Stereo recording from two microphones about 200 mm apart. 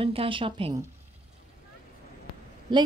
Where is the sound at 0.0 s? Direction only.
25° right (ahead or behind).